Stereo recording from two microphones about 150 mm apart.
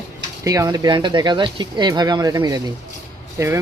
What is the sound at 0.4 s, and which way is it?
Speech, 25° right (ahead or behind).